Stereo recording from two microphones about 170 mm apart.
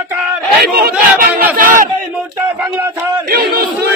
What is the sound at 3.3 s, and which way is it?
Speech, 65° right (ahead or behind).